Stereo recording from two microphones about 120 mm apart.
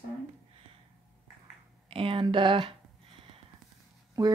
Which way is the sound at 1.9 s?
50° right (ahead or behind).